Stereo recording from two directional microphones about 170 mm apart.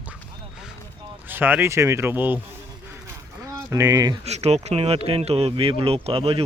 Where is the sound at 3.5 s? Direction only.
20° right (ahead or behind).